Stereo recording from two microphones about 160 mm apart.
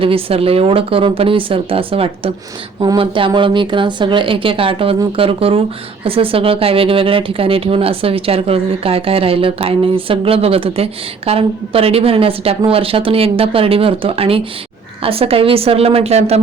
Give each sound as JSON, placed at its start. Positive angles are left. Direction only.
{"t": 0.0, "sound": "speech", "side_deg": -35}